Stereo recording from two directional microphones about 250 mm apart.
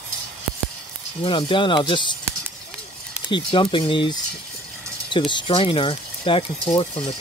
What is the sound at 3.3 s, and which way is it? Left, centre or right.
Speech, centre.